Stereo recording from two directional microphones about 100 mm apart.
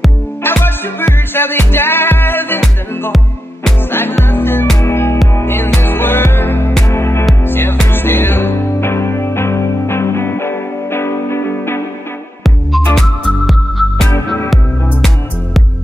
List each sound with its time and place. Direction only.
0.4 s music: 20° left (ahead or behind)
4.2 s music: 20° left (ahead or behind)
12.9 s music: centre (ahead or behind)
14.1 s music: 25° left (ahead or behind)